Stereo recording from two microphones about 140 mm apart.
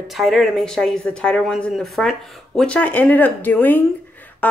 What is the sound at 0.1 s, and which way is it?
Speech, centre (ahead or behind).